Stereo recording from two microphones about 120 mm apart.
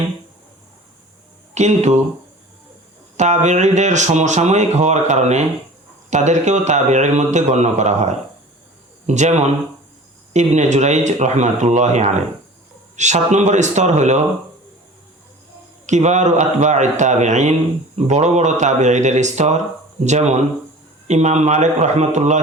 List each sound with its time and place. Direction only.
1.5 s speech: 70° right (ahead or behind)
3.2 s speech: 75° right (ahead or behind)
15.9 s a man's voice: 75° right (ahead or behind)
17.9 s speech: 70° right (ahead or behind)